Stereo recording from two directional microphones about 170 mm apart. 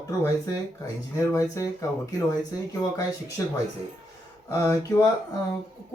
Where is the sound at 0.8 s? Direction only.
20° left (ahead or behind).